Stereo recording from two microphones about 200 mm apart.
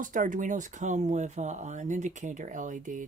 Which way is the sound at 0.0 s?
40° right (ahead or behind).